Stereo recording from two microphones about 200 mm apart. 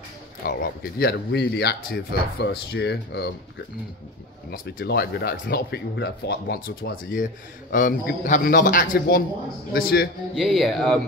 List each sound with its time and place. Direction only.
0.5 s speech: 50° left (ahead or behind)
4.5 s speech: 55° left (ahead or behind)
10.3 s speech: centre (ahead or behind)